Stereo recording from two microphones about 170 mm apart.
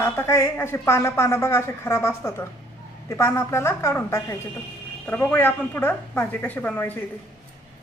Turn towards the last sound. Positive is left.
turn(degrees=10)  # may be behind; listen again after turning